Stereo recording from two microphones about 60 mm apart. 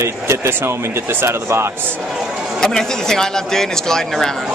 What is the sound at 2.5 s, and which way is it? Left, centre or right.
Speech, centre.